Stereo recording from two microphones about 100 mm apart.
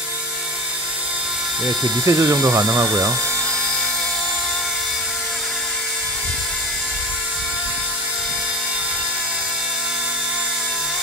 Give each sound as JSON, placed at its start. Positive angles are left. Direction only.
{"t": 2.0, "sound": "speech", "side_deg": -30}